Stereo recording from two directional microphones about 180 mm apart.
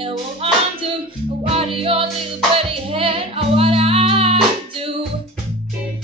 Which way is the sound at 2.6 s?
30° right (ahead or behind).